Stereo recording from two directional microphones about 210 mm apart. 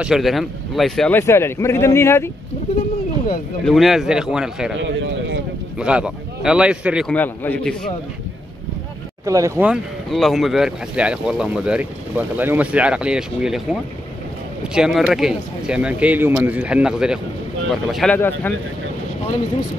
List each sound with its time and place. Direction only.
0.0 s a man's voice: centre (ahead or behind)
3.6 s speech: centre (ahead or behind)
4.7 s speech: 65° right (ahead or behind)
5.8 s speech: 5° right (ahead or behind)
9.2 s speech: 15° right (ahead or behind)
9.7 s a man's voice: centre (ahead or behind)